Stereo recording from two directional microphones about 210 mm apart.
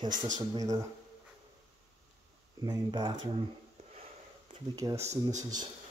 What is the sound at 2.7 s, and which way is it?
Speech, 20° right (ahead or behind).